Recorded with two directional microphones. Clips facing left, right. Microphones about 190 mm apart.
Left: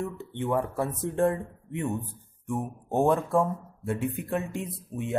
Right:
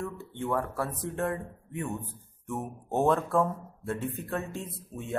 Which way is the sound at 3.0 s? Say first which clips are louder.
Left 2 dB; 15° left (ahead or behind).